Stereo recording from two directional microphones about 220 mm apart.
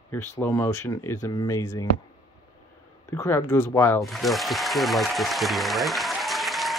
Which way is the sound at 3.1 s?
15° left (ahead or behind).